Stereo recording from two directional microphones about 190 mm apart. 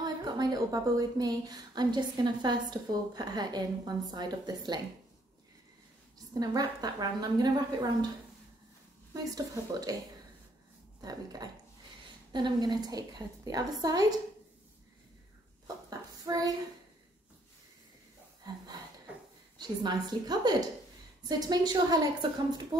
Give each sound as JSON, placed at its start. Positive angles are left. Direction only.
{"t": 0.0, "sound": "a woman's voice", "side_deg": -20}
{"t": 6.4, "sound": "a woman's voice", "side_deg": -20}
{"t": 9.1, "sound": "a woman's voice", "side_deg": -20}
{"t": 11.0, "sound": "a woman's voice", "side_deg": -20}
{"t": 15.6, "sound": "a sound", "side_deg": -20}
{"t": 19.6, "sound": "a woman's voice", "side_deg": -20}